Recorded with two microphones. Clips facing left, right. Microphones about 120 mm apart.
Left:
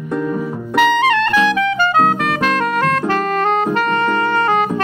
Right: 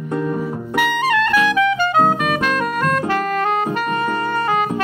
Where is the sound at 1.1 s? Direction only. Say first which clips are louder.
Left 1 dB; 30° left (ahead or behind).